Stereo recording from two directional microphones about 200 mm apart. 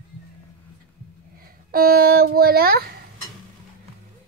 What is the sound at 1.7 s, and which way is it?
A child's voice, 50° right (ahead or behind).